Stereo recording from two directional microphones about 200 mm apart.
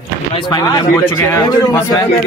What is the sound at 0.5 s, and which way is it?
Speech, 15° left (ahead or behind).